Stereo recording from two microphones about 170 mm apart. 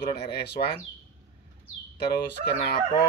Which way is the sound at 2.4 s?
70° left (ahead or behind).